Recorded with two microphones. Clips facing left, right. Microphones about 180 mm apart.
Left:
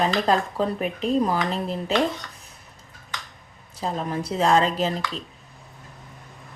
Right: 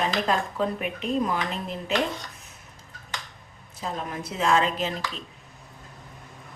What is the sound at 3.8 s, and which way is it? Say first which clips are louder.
Speech: left 5 dB; 35° left (ahead or behind).